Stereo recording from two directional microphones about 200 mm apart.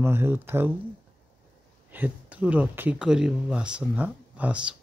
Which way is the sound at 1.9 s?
10° right (ahead or behind).